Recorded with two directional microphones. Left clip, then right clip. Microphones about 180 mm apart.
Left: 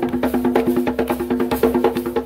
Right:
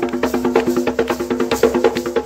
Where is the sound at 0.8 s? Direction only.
50° left (ahead or behind).